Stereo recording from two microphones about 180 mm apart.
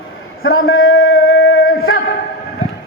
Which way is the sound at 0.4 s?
90° left.